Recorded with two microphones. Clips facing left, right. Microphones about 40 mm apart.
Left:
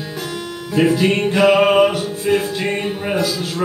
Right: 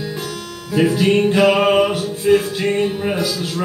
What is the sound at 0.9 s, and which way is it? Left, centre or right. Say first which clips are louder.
Music: right 1 dB; centre.